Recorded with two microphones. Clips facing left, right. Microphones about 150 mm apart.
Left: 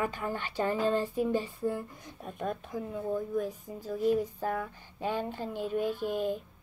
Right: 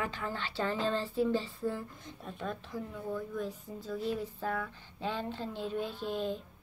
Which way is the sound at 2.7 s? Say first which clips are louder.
Left 5 dB; 20° left (ahead or behind).